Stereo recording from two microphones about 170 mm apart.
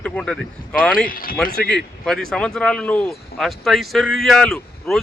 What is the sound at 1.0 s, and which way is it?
Speech, 55° left (ahead or behind).